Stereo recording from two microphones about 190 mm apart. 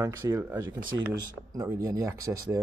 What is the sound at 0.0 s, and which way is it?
Speech, 15° right (ahead or behind).